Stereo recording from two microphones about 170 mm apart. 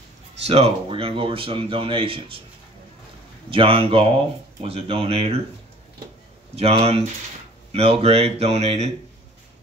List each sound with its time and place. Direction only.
0.5 s speech: 35° right (ahead or behind)
3.4 s speech: 30° right (ahead or behind)
6.5 s speech: 35° right (ahead or behind)